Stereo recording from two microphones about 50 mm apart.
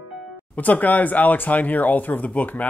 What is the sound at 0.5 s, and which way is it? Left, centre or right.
Speech, left.